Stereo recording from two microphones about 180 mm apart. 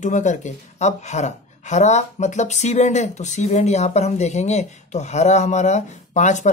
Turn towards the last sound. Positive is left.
turn(degrees=40)  # may be behind; listen again after turning